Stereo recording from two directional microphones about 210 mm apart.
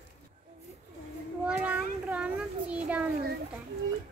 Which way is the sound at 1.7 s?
5° right (ahead or behind).